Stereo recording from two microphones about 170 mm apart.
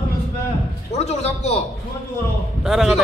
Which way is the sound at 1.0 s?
40° left (ahead or behind).